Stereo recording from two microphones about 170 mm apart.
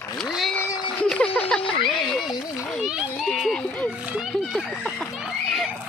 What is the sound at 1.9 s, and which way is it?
Speech, centre (ahead or behind).